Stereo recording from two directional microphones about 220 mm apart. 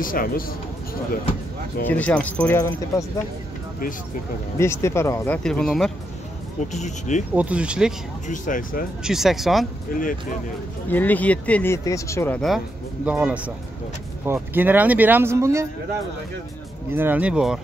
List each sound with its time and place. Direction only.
0.0 s speech: 40° left (ahead or behind)
1.9 s speech: 5° left (ahead or behind)
4.6 s speech: 10° left (ahead or behind)
6.7 s speech: 35° left (ahead or behind)
7.3 s speech: 5° right (ahead or behind)
8.3 s speech: 35° left (ahead or behind)
9.0 s speech: centre (ahead or behind)
9.9 s speech: 40° left (ahead or behind)
10.9 s speech: 10° left (ahead or behind); by 15.6 s 10° right (ahead or behind)
16.9 s speech: 10° right (ahead or behind)